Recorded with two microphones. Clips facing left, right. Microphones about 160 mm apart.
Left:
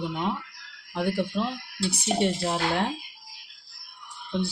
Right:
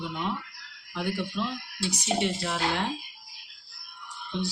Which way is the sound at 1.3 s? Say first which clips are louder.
Left 3 dB; 45° left (ahead or behind).